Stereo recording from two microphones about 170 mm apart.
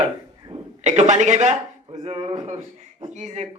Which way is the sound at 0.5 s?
40° right (ahead or behind).